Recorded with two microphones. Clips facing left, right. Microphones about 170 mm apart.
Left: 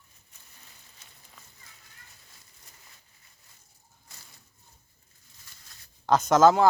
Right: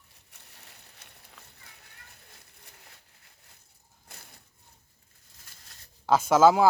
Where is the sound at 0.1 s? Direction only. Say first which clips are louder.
Right 2 dB; 70° right (ahead or behind).